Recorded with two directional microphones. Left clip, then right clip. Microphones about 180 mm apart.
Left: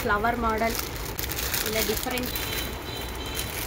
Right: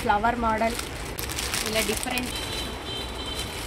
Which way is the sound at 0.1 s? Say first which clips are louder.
Right 3 dB; 40° right (ahead or behind).